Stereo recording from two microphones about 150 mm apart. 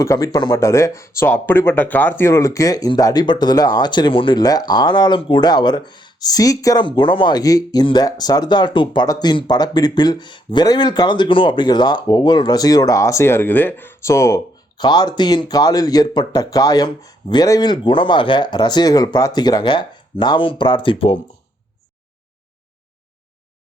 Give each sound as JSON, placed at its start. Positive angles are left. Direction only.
{"t": 0.0, "sound": "speech", "side_deg": 20}